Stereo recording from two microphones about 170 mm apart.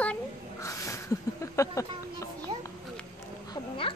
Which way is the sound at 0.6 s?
20° left (ahead or behind).